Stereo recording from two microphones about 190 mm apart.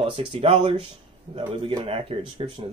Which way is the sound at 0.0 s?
30° right (ahead or behind).